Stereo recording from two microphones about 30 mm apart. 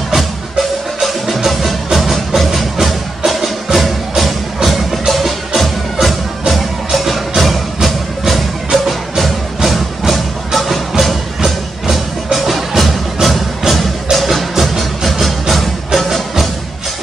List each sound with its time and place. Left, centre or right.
0.1 s music: centre
6.4 s music: centre
15.1 s music: centre